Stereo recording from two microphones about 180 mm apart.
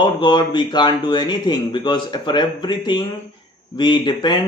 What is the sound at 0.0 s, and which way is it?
Speech, 25° left (ahead or behind).